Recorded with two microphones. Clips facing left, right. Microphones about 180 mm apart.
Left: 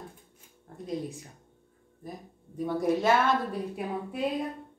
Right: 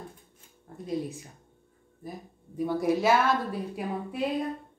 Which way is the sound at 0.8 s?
Centre (ahead or behind).